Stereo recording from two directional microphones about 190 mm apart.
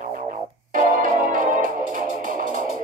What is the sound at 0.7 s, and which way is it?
Music, 45° right (ahead or behind).